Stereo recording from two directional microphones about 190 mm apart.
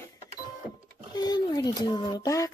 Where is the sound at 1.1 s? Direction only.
20° left (ahead or behind).